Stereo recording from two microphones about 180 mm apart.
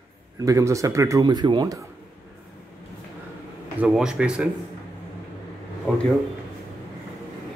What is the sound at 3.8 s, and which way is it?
Speech, 5° right (ahead or behind).